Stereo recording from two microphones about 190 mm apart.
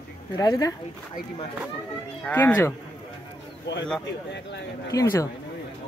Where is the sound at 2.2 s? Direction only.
10° left (ahead or behind).